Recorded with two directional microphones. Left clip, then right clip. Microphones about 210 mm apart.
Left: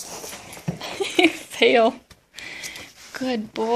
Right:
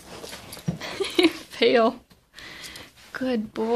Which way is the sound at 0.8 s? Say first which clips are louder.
Left 3 dB; 5° right (ahead or behind).